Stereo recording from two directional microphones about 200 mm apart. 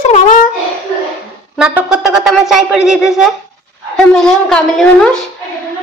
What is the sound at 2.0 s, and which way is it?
A woman's voice, centre (ahead or behind).